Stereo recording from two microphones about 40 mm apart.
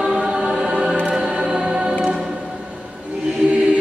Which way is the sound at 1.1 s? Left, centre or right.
Centre.